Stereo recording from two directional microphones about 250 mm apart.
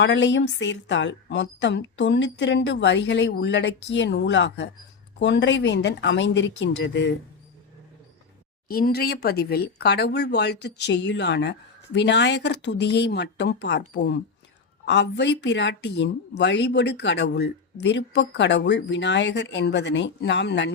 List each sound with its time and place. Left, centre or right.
0.0 s speech: left
8.6 s speech: left